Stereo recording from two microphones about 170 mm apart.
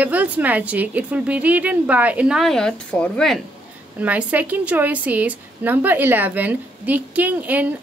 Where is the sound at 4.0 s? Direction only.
10° right (ahead or behind).